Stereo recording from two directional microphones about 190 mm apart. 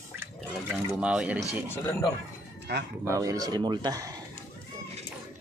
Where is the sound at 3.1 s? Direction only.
20° right (ahead or behind).